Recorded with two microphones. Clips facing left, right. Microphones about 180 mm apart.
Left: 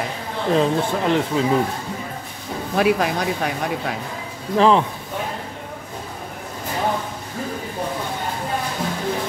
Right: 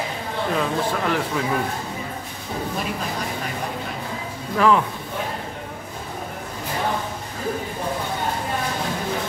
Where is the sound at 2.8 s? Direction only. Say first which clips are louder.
Left 9 dB; 75° left (ahead or behind).